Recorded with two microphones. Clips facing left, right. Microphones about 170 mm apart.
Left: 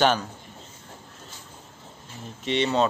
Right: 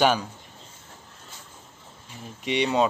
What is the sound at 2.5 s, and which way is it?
Speech, 10° right (ahead or behind).